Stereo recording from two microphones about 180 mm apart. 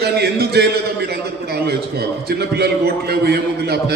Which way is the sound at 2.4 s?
65° right (ahead or behind).